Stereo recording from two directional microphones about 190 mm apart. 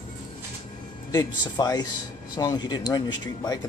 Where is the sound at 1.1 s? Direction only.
20° left (ahead or behind).